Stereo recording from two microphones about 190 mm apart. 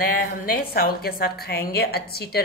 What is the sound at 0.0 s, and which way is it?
A woman's voice, 50° left (ahead or behind).